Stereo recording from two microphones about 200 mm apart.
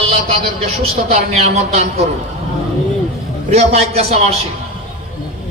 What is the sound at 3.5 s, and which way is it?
Speech, 30° right (ahead or behind).